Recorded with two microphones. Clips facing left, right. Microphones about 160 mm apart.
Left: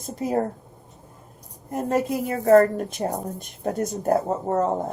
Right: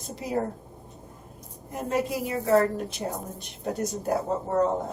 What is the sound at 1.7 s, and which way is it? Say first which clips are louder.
A woman's voice: left 4 dB; 50° left (ahead or behind).